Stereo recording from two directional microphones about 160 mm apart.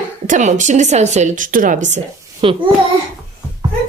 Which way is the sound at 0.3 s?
50° right (ahead or behind).